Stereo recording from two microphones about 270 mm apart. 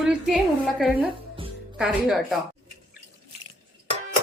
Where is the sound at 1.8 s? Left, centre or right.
Centre.